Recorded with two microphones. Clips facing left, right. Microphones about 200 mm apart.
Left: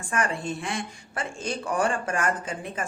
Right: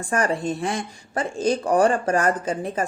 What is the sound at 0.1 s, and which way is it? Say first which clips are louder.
Speech: right 5 dB; 40° right (ahead or behind).